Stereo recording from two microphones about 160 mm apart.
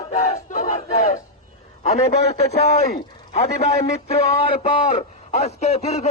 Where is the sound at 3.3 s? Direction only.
40° left (ahead or behind).